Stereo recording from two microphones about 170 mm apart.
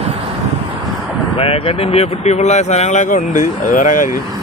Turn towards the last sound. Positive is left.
turn(degrees=50)  # may be behind; listen again after turning